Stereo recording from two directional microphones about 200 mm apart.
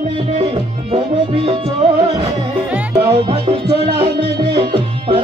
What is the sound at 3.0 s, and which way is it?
Music, 30° right (ahead or behind).